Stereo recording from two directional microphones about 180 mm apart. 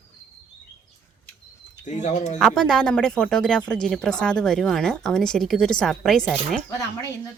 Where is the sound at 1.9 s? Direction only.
40° left (ahead or behind).